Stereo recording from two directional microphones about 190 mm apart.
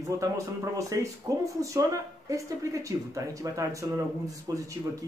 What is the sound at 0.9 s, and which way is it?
Speech, 20° right (ahead or behind).